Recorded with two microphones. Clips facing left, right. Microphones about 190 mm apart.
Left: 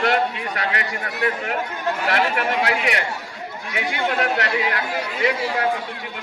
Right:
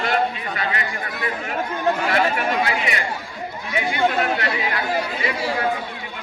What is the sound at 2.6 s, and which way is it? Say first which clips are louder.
A man's voice: left 1 dB; 75° left (ahead or behind).